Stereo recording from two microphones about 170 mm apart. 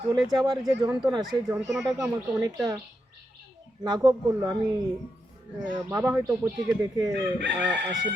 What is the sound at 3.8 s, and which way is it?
Speech, 25° right (ahead or behind).